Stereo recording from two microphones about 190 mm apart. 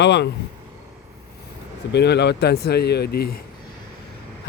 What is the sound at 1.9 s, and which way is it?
Speech, 65° left (ahead or behind).